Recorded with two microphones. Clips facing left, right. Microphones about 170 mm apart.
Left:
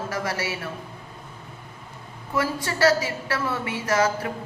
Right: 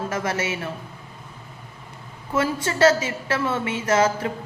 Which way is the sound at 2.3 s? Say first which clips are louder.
Right 3 dB; 25° right (ahead or behind).